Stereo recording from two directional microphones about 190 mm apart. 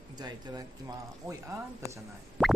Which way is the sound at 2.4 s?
Centre (ahead or behind).